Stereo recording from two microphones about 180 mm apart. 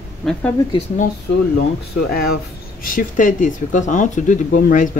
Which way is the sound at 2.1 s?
60° left (ahead or behind).